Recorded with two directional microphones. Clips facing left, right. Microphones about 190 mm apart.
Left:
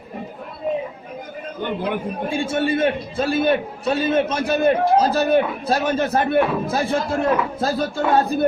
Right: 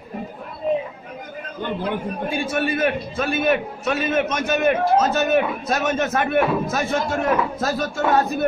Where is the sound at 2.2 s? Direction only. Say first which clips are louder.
Left 2 dB; 25° left (ahead or behind).